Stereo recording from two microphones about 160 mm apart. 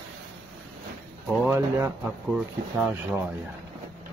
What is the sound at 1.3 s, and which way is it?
Speech, 15° right (ahead or behind).